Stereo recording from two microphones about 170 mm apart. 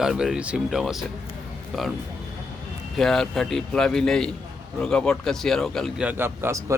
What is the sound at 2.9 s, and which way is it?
A man's voice, centre (ahead or behind).